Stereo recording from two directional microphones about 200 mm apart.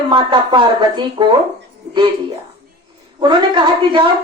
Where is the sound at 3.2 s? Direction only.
20° right (ahead or behind).